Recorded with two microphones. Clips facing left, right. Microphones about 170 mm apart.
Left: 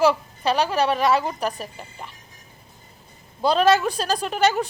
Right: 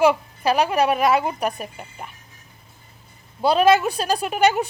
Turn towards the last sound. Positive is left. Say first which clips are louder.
# right 2 dB
turn(degrees=-10)  # may be behind; listen again after turning